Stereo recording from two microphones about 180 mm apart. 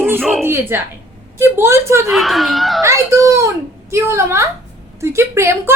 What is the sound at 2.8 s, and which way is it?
A woman's voice, 15° right (ahead or behind).